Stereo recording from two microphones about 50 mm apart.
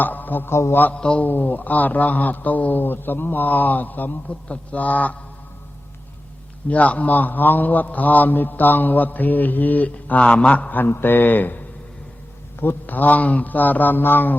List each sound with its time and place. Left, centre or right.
0.0 s a man's voice: left
0.5 s a man's voice: left
0.9 s a man's voice: centre
1.2 s a man's voice: left
4.4 s a man's voice: left
6.7 s a man's voice: left